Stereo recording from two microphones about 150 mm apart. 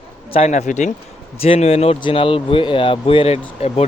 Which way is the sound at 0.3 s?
50° left (ahead or behind).